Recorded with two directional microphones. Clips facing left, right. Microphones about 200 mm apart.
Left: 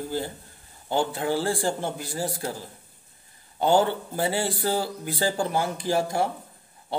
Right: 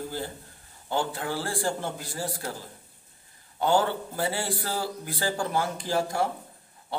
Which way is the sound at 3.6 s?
20° left (ahead or behind).